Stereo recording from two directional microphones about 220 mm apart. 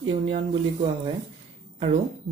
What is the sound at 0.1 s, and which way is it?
A man's voice, 25° right (ahead or behind).